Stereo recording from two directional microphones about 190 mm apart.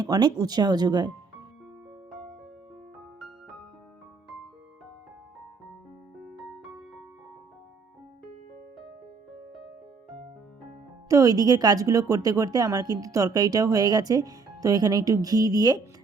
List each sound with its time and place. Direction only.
0.0 s a woman's voice: 20° right (ahead or behind)
6.2 s music: centre (ahead or behind)
11.1 s a woman's voice: 20° right (ahead or behind)